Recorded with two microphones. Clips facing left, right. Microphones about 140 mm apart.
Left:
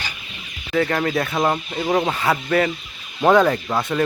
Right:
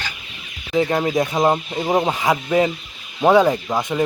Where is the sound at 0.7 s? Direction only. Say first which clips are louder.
Right 2 dB; 15° right (ahead or behind).